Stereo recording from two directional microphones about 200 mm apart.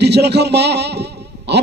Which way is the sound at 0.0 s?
55° right (ahead or behind).